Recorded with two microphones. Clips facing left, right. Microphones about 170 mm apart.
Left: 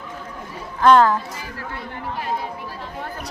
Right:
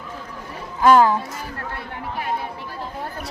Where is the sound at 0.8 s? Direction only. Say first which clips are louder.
Even; 10° right (ahead or behind).